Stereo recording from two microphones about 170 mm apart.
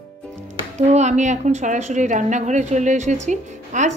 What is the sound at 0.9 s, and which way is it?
A woman's voice, 45° right (ahead or behind).